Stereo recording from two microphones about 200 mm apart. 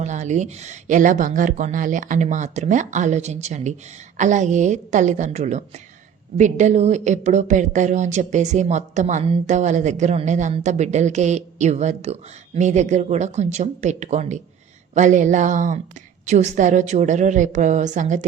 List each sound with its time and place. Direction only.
0.0 s a woman's voice: 35° right (ahead or behind)